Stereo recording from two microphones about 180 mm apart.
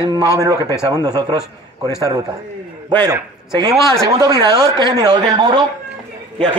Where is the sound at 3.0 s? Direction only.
20° right (ahead or behind).